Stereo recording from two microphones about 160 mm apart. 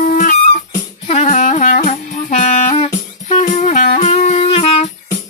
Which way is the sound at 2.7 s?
40° left (ahead or behind).